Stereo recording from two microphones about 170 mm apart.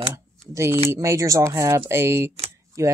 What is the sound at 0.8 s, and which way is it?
Speech, 15° right (ahead or behind).